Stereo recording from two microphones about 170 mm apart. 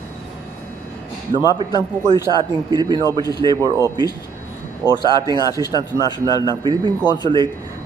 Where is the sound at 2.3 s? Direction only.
25° right (ahead or behind).